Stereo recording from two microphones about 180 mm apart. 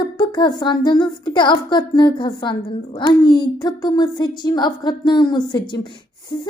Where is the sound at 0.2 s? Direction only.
25° left (ahead or behind).